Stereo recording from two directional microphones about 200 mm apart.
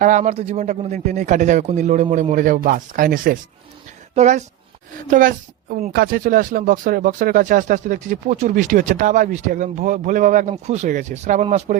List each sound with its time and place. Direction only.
0.0 s speech: 40° right (ahead or behind)